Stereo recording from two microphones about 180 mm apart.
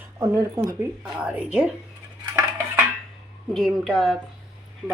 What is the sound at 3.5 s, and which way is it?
Speech, centre (ahead or behind).